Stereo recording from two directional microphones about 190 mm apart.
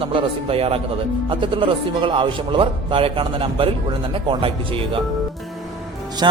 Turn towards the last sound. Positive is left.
turn(degrees=-25)  # may be behind; listen again after turning